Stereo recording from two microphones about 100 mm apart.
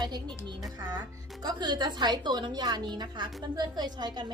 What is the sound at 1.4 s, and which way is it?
A woman's voice, 45° right (ahead or behind).